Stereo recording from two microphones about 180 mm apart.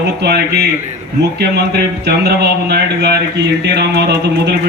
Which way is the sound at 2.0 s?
65° right (ahead or behind).